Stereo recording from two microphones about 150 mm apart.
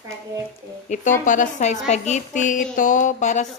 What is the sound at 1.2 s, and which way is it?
Speech, 55° left (ahead or behind).